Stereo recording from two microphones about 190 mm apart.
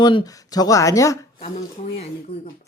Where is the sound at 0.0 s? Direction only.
25° left (ahead or behind).